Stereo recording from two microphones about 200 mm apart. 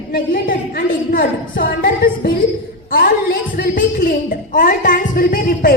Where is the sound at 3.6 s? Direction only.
45° left (ahead or behind).